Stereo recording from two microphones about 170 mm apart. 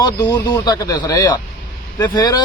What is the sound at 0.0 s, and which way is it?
Speech, 25° left (ahead or behind).